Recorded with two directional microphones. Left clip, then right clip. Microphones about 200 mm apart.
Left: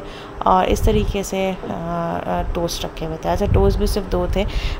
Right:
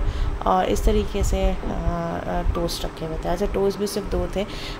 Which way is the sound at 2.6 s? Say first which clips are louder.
Left 3 dB; 20° left (ahead or behind).